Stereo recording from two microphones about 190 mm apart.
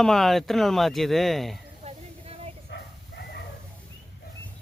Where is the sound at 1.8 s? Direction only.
35° right (ahead or behind).